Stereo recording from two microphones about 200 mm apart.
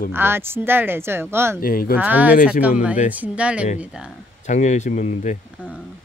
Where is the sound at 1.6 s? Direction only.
45° left (ahead or behind).